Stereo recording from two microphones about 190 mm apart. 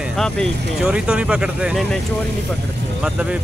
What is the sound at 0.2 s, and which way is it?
Speech, centre (ahead or behind).